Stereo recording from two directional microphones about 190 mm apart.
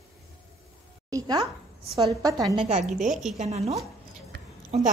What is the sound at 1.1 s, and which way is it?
A woman's voice, 20° right (ahead or behind).